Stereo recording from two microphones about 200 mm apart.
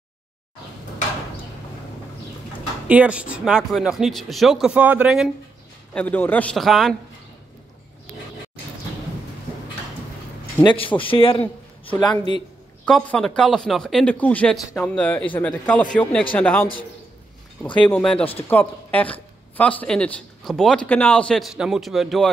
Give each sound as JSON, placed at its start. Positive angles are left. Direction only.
{"t": 2.9, "sound": "speech", "side_deg": -5}
{"t": 5.9, "sound": "speech", "side_deg": 10}
{"t": 10.6, "sound": "a man's voice", "side_deg": 25}
{"t": 12.8, "sound": "speech", "side_deg": 5}
{"t": 17.7, "sound": "speech", "side_deg": 5}